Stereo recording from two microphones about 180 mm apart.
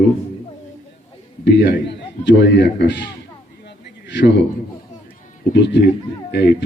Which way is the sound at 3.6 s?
75° left (ahead or behind).